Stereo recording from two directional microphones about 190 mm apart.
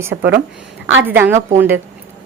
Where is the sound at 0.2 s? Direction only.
55° right (ahead or behind).